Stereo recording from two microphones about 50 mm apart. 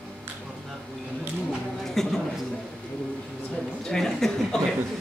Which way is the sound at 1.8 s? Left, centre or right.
Centre.